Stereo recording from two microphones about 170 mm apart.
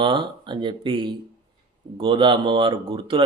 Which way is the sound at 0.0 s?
30° right (ahead or behind).